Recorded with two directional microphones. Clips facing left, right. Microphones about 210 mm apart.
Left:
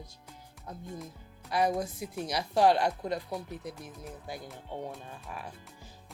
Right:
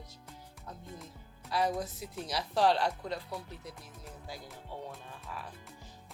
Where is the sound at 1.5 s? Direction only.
15° left (ahead or behind).